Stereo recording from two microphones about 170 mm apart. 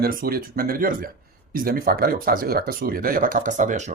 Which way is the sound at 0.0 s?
60° right (ahead or behind).